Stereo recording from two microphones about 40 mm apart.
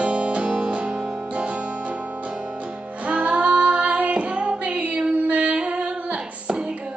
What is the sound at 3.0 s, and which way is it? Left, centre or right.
Music, right.